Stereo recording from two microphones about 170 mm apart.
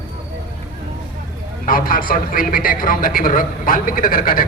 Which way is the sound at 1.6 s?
55° left (ahead or behind).